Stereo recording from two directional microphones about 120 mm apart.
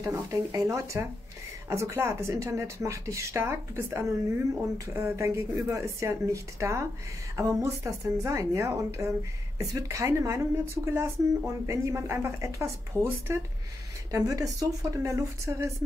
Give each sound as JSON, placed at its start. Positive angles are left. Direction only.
{"t": 0.0, "sound": "a woman's voice", "side_deg": -25}
{"t": 12.9, "sound": "speech", "side_deg": 15}
{"t": 14.1, "sound": "a woman's voice", "side_deg": -30}